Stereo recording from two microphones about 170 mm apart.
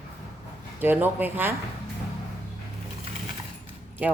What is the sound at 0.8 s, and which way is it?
Speech, 10° right (ahead or behind).